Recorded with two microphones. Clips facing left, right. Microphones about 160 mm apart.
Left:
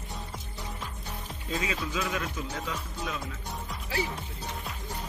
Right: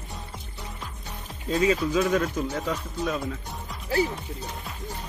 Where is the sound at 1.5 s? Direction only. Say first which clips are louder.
Right 10 dB; 40° right (ahead or behind).